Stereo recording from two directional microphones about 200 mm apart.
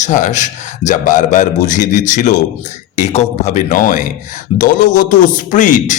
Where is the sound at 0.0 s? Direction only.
40° left (ahead or behind).